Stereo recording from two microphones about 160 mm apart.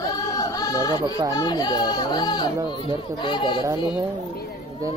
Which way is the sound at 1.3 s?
25° left (ahead or behind).